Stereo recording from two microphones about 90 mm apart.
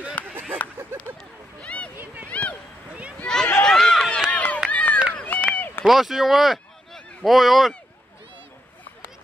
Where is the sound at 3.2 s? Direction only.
5° left (ahead or behind).